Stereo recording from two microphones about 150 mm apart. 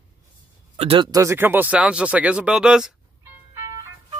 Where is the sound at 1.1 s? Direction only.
20° right (ahead or behind).